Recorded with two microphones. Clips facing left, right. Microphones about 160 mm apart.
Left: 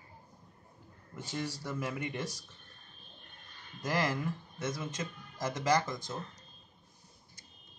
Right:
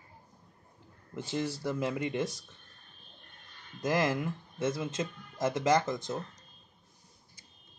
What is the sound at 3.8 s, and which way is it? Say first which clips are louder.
Speech: right 4 dB; 20° right (ahead or behind).